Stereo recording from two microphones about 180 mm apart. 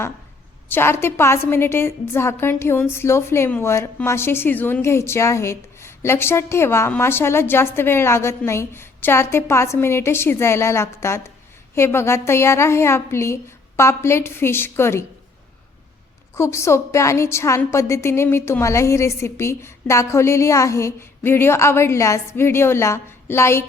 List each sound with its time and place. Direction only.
0.7 s a woman's voice: 15° left (ahead or behind)
16.3 s a woman's voice: 15° left (ahead or behind)